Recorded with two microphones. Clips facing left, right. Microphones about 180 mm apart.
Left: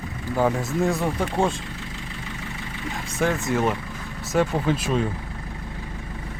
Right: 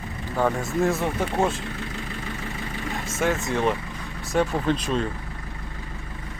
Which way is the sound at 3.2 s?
Centre (ahead or behind).